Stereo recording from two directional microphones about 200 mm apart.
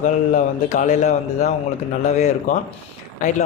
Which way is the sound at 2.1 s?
35° left (ahead or behind).